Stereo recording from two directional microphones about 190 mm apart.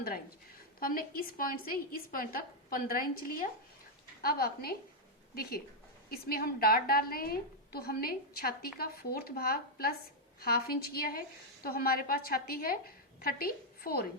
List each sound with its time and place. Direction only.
0.8 s a woman's voice: 50° left (ahead or behind)